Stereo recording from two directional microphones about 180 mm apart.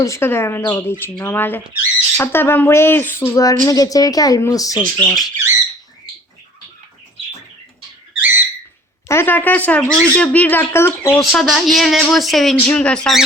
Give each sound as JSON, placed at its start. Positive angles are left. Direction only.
{"t": 0.0, "sound": "speech", "side_deg": 15}
{"t": 8.1, "sound": "a sound", "side_deg": -10}
{"t": 9.0, "sound": "speech", "side_deg": 15}
{"t": 11.2, "sound": "speech", "side_deg": 0}